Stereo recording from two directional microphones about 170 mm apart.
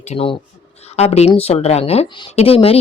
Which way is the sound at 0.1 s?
35° left (ahead or behind).